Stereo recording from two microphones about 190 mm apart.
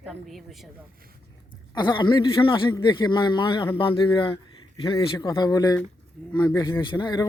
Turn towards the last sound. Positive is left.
turn(degrees=20)  # may be behind; listen again after turning